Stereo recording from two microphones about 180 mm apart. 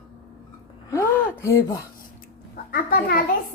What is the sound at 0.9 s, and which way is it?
Speech, 15° left (ahead or behind).